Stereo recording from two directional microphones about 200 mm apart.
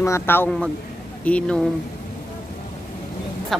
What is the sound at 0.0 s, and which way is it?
Speech, 10° left (ahead or behind).